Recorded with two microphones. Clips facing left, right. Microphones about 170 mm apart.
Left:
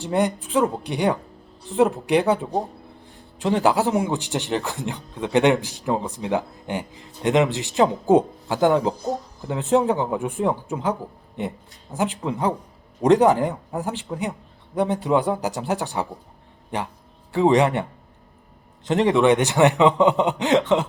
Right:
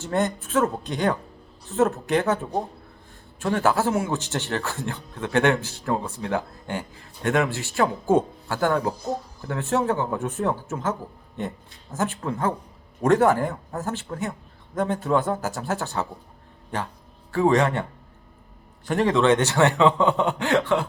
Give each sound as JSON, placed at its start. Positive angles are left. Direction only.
{"t": 0.0, "sound": "speech", "side_deg": 15}
{"t": 18.9, "sound": "speech", "side_deg": 20}